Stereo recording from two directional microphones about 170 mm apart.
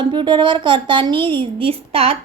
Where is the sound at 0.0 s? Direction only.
30° right (ahead or behind).